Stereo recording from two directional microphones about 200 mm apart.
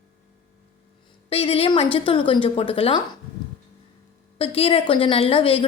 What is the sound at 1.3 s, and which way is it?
A woman's voice, 30° left (ahead or behind).